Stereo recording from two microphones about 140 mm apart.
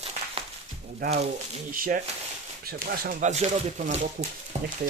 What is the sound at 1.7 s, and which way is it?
Speech, 85° right.